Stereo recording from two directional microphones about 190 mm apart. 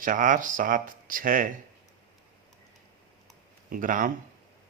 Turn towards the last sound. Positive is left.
turn(degrees=-45)  # may be behind; listen again after turning